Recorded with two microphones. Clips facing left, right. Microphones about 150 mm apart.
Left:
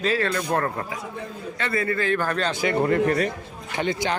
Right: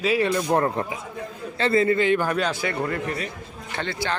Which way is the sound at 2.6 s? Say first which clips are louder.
Left 5 dB; 25° left (ahead or behind).